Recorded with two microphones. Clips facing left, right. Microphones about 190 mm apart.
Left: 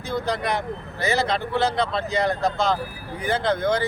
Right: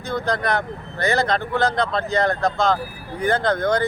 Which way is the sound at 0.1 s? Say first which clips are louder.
Right 2 dB; 5° left (ahead or behind).